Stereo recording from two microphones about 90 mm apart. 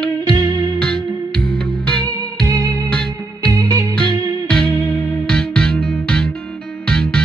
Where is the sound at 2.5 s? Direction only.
35° right (ahead or behind).